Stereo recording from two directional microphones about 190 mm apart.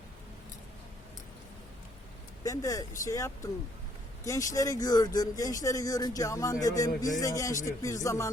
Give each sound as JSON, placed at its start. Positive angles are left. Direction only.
{"t": 2.4, "sound": "speech", "side_deg": 15}